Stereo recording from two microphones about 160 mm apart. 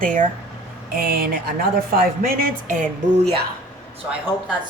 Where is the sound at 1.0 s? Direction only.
70° right (ahead or behind).